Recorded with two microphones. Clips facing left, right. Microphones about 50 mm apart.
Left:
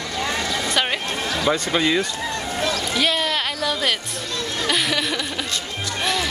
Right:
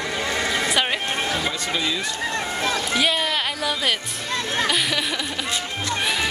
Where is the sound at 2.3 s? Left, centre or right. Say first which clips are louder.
Even; right.